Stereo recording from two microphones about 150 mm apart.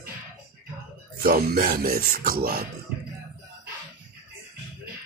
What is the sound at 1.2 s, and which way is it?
Speech, 90° right.